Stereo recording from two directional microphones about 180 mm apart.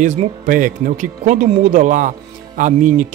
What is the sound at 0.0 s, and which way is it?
Speech, 45° right (ahead or behind).